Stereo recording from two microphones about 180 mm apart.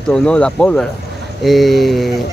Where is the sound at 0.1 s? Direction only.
5° left (ahead or behind).